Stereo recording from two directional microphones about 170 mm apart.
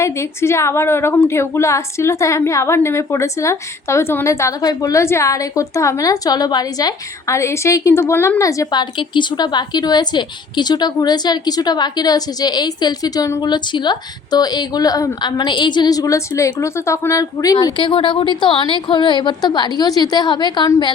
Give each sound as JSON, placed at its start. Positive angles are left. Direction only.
{"t": 0.0, "sound": "a woman's voice", "side_deg": 15}